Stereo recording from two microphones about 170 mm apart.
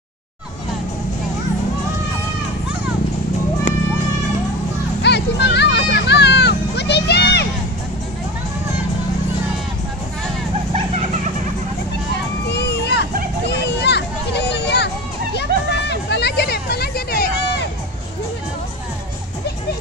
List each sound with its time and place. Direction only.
5.0 s children playing: 80° left
12.4 s a sound: 80° left
15.3 s hubbub: 80° left; by 17.6 s 65° left (ahead or behind)